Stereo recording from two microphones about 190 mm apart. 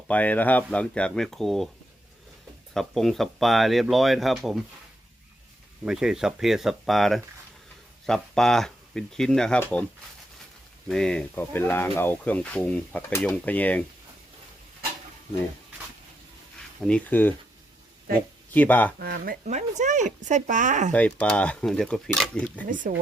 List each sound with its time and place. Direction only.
0.1 s speech: 10° left (ahead or behind)
2.7 s speech: centre (ahead or behind)
5.8 s speech: 5° right (ahead or behind)
10.8 s speech: 5° left (ahead or behind)
16.8 s speech: 5° left (ahead or behind)
18.5 s speech: 10° left (ahead or behind)
18.9 s speech: 50° right (ahead or behind)
20.9 s speech: 5° left (ahead or behind)
22.6 s speech: 45° right (ahead or behind)